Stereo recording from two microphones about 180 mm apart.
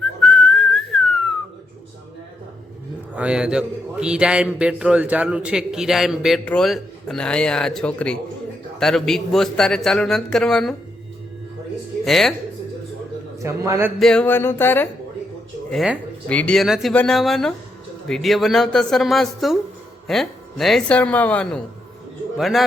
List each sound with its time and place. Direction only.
0.0 s whistling: centre (ahead or behind)
3.2 s a man's voice: 5° right (ahead or behind)
12.0 s a man's voice: centre (ahead or behind)
13.4 s a man's voice: 15° right (ahead or behind)
14.0 s a man's voice: 5° left (ahead or behind)
15.7 s a man's voice: centre (ahead or behind)